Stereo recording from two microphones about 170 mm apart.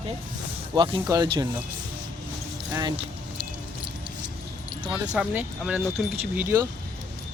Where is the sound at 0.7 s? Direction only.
25° right (ahead or behind).